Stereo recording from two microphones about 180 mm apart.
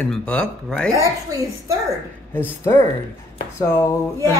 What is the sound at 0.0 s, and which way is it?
Speech, 5° left (ahead or behind).